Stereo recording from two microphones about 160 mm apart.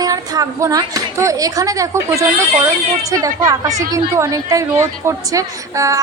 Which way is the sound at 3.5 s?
20° right (ahead or behind).